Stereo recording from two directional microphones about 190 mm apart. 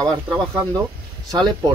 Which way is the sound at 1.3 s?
20° right (ahead or behind).